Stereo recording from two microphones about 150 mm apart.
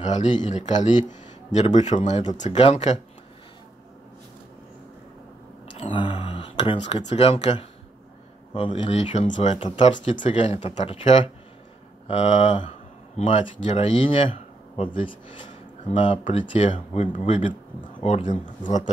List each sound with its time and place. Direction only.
0.0 s speech: 55° left (ahead or behind)
5.8 s a sound: 35° left (ahead or behind)
7.0 s speech: 45° left (ahead or behind)
9.6 s speech: 35° left (ahead or behind)
9.9 s speech: 55° left (ahead or behind)
10.3 s speech: 35° left (ahead or behind)
13.2 s speech: 50° left (ahead or behind)
13.7 s speech: 40° left (ahead or behind)
16.5 s speech: 50° left (ahead or behind)